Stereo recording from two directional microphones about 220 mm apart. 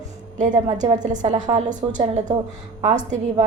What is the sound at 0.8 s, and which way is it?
A woman's voice, 35° right (ahead or behind).